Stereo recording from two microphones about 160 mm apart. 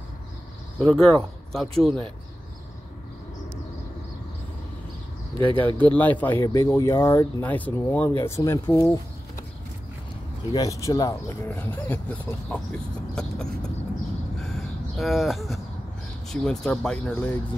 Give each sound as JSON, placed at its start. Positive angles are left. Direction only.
{"t": 0.7, "sound": "speech", "side_deg": 5}
{"t": 5.4, "sound": "speech", "side_deg": -30}
{"t": 5.8, "sound": "speech", "side_deg": 10}
{"t": 10.5, "sound": "speech", "side_deg": 20}
{"t": 14.4, "sound": "a sound", "side_deg": 0}
{"t": 16.3, "sound": "speech", "side_deg": 5}